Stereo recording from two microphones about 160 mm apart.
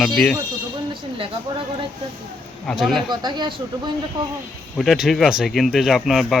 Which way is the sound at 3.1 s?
25° right (ahead or behind).